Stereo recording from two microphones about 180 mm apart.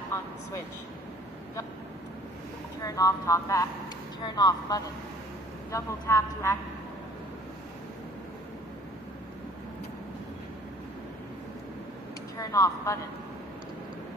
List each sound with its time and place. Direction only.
0.1 s vehicle: 15° left (ahead or behind)
2.8 s a woman's voice: 20° left (ahead or behind)
12.4 s speech: 20° left (ahead or behind)